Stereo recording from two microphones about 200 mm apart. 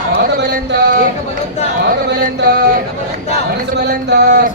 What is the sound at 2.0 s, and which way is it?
Speech, 50° right (ahead or behind).